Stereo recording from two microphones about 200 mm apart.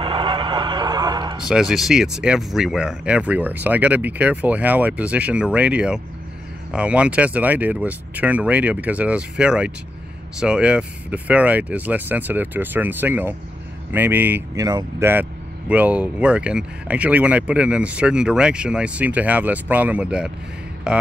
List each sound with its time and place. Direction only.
0.0 s neigh: 25° right (ahead or behind)
1.5 s speech: centre (ahead or behind)